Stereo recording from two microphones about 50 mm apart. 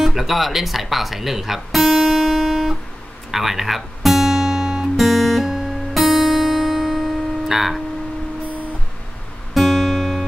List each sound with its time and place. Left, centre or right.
0.0 s speech: centre
3.3 s guitar: centre
9.5 s guitar: centre